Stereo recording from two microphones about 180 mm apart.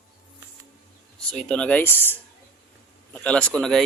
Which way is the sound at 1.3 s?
5° left (ahead or behind).